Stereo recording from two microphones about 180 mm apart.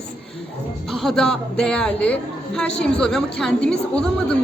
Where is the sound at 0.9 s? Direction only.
Centre (ahead or behind).